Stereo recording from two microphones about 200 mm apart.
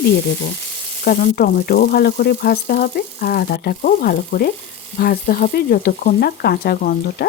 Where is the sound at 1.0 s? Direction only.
45° left (ahead or behind).